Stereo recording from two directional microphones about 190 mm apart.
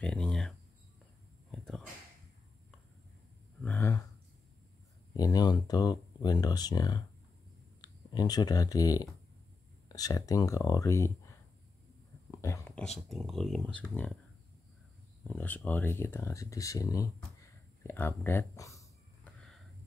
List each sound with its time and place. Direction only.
0.0 s a sound: 5° left (ahead or behind)
3.6 s gasp: 15° left (ahead or behind)
5.1 s speech: 20° left (ahead or behind)
12.3 s a sound: 15° left (ahead or behind)
13.1 s speech: centre (ahead or behind)
15.2 s speech: 10° left (ahead or behind)